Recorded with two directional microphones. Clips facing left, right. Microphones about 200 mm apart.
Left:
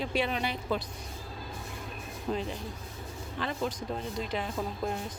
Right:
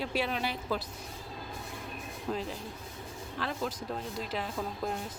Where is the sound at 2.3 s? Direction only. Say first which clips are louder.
Left 2 dB; 5° left (ahead or behind).